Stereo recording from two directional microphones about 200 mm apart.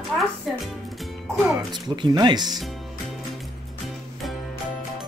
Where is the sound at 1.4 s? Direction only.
20° right (ahead or behind).